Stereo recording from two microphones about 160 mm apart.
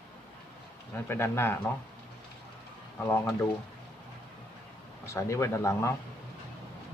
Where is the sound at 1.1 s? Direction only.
15° left (ahead or behind).